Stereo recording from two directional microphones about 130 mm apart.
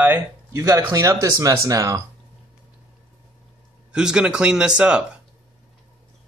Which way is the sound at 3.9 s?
5° right (ahead or behind).